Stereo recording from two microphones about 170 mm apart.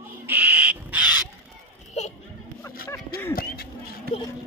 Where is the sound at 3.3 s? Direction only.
60° left (ahead or behind).